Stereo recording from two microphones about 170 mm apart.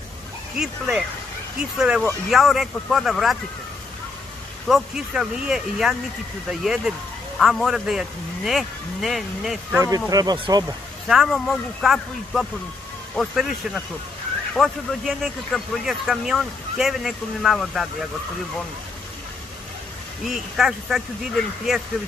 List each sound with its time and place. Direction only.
0.6 s speech: 5° right (ahead or behind)
4.6 s speech: centre (ahead or behind)
9.8 s speech: 20° right (ahead or behind)
11.1 s speech: centre (ahead or behind)
20.2 s speech: centre (ahead or behind)